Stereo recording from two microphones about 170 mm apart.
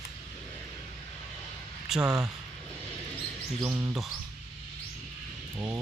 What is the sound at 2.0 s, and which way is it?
Speech, 20° right (ahead or behind).